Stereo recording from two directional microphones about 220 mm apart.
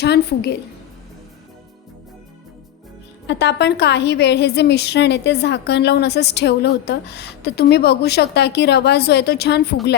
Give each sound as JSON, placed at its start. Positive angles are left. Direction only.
{"t": 0.0, "sound": "a woman's voice", "side_deg": 50}
{"t": 3.2, "sound": "a woman's voice", "side_deg": 50}